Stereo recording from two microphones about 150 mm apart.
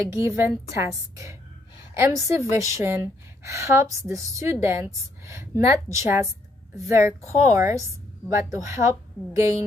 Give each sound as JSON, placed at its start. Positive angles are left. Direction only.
{"t": 0.1, "sound": "a woman's voice", "side_deg": -20}